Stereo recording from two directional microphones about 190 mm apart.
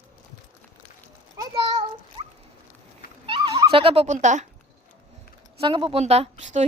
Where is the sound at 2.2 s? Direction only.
35° right (ahead or behind).